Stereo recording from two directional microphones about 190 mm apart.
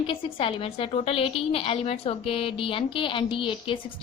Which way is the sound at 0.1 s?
30° left (ahead or behind).